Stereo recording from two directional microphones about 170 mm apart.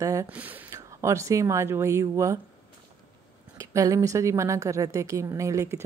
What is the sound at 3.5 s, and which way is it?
A woman's voice, 20° right (ahead or behind).